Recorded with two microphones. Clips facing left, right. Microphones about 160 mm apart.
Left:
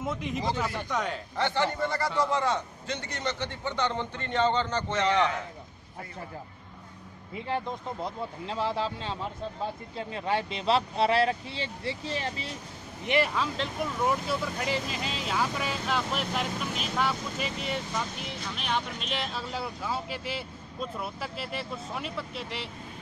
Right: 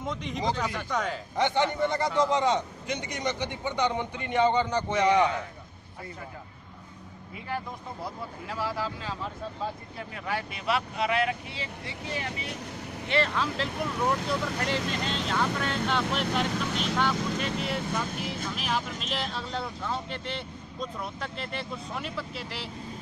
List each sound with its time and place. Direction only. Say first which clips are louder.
0.0 s speech: even; 5° left (ahead or behind)
1.3 s a man's voice: right 3 dB; 15° right (ahead or behind)
7.4 s speech: left 3 dB; 25° left (ahead or behind)
13.0 s speech: left 1 dB; 15° left (ahead or behind)
13.3 s speech: right 1 dB; centre (ahead or behind)